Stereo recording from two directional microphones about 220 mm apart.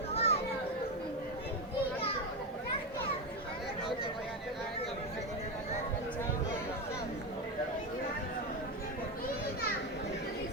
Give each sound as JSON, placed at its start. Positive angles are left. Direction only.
{"t": 0.1, "sound": "children playing", "side_deg": 25}